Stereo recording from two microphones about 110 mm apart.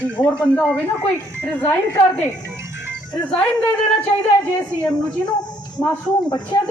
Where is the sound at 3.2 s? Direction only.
10° left (ahead or behind).